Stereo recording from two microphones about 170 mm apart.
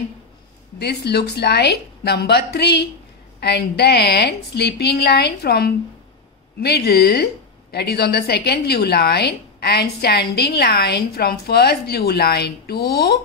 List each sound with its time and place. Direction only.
0.7 s a woman's voice: 75° left (ahead or behind)